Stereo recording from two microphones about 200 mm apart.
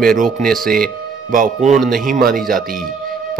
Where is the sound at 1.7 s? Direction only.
Centre (ahead or behind).